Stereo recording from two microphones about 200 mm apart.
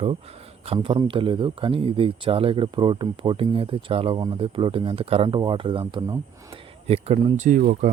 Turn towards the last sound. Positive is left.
turn(degrees=-40)  # may be behind; listen again after turning